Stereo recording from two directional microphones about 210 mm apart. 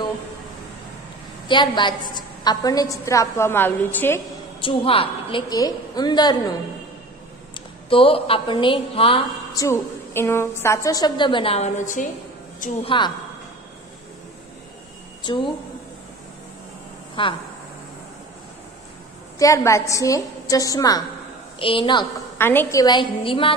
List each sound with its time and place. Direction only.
1.5 s a woman's voice: 20° left (ahead or behind)
4.6 s a woman's voice: 25° left (ahead or behind)
7.9 s a woman's voice: 25° left (ahead or behind)
9.6 s a woman's voice: 15° left (ahead or behind); by 12.1 s 35° left (ahead or behind)
12.8 s a woman's voice: 20° left (ahead or behind)
15.2 s a woman's voice: 25° left (ahead or behind)
17.1 s speech: 25° left (ahead or behind)
19.3 s a woman's voice: 15° left (ahead or behind)
22.4 s a woman's voice: 10° left (ahead or behind)